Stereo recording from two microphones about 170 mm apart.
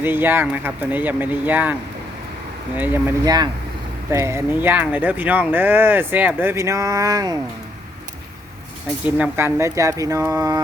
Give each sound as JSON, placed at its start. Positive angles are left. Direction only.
{"t": 0.0, "sound": "speech", "side_deg": -10}
{"t": 2.7, "sound": "speech", "side_deg": -10}
{"t": 3.2, "sound": "speech", "side_deg": -25}
{"t": 9.0, "sound": "speech", "side_deg": -10}